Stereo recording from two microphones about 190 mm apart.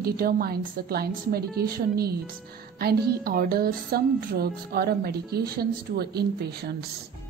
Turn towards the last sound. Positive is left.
turn(degrees=-60)  # may be behind; listen again after turning